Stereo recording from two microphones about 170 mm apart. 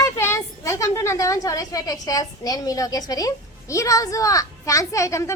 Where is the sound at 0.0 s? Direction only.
15° left (ahead or behind).